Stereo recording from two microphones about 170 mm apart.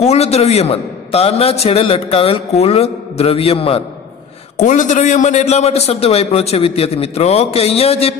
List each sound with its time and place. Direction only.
0.0 s a man's voice: 40° left (ahead or behind)
4.6 s a man's voice: 45° left (ahead or behind)